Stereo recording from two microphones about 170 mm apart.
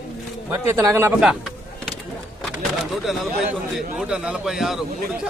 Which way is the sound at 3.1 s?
Centre (ahead or behind).